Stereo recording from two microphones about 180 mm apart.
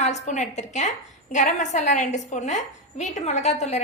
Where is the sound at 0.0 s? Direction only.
40° left (ahead or behind).